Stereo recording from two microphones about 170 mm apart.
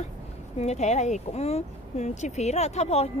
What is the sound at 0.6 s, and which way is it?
Speech, 40° left (ahead or behind).